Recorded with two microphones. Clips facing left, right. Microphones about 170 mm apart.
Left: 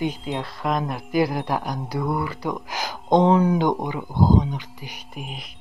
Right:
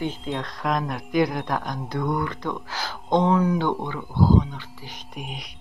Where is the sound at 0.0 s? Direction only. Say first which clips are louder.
Left 2 dB; 10° left (ahead or behind).